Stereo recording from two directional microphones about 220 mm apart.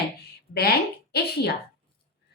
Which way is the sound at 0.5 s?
45° left (ahead or behind).